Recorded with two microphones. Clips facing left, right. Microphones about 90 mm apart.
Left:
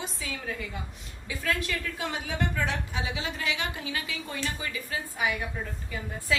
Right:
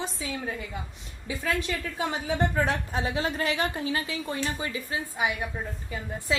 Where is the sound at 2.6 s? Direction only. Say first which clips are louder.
Right 4 dB; 45° right (ahead or behind).